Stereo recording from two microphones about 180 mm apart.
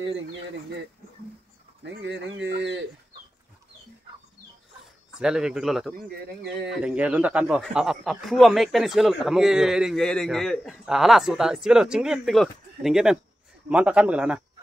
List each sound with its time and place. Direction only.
1.8 s speech: 75° right (ahead or behind)
5.2 s a man's voice: 5° right (ahead or behind)